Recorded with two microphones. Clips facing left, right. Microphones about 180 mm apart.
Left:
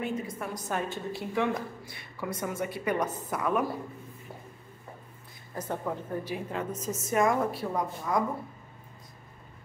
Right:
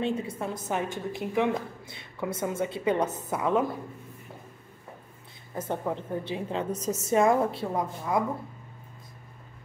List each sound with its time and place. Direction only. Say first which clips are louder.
0.0 s a woman's voice: right 4 dB; 30° right (ahead or behind)
5.6 s a woman's voice: right 2 dB; 25° right (ahead or behind)